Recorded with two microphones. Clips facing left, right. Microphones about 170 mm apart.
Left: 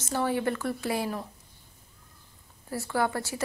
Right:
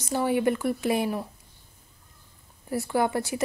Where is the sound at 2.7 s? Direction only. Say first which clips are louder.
Right 3 dB; 15° right (ahead or behind).